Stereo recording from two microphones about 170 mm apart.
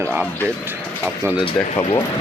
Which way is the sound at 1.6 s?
40° left (ahead or behind).